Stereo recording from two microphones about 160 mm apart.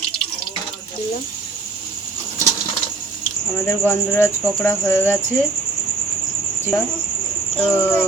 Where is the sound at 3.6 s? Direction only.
15° left (ahead or behind).